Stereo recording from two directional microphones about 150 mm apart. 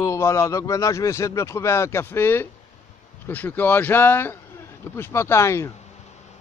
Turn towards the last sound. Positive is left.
turn(degrees=20)  # may be behind; listen again after turning